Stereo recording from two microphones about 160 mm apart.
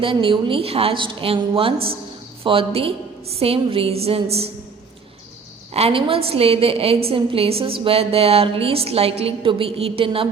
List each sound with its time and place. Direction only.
0.0 s a woman's voice: 30° right (ahead or behind)
5.7 s a woman's voice: 40° right (ahead or behind)